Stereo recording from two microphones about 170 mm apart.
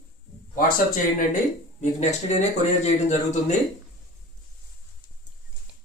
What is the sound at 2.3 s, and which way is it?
Speech, 40° left (ahead or behind).